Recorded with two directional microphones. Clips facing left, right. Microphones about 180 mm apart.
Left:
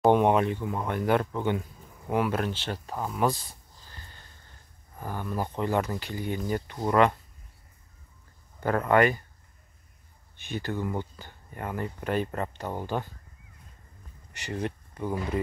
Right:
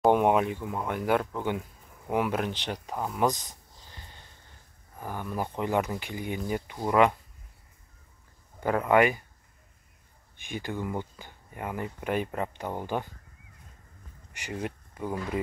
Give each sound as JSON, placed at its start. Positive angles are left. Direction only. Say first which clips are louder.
{"t": 0.0, "sound": "speech", "louder": "left 1 dB", "side_deg": -5}
{"t": 3.2, "sound": "a sound", "louder": "even", "side_deg": -20}
{"t": 5.0, "sound": "speech", "louder": "left 1 dB", "side_deg": -10}
{"t": 8.6, "sound": "speech", "louder": "even", "side_deg": -10}
{"t": 10.3, "sound": "speech", "louder": "left 2 dB", "side_deg": -15}
{"t": 14.3, "sound": "speech", "louder": "left 2 dB", "side_deg": -10}